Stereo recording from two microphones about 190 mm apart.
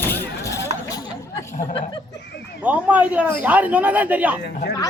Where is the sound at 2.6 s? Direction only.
5° right (ahead or behind).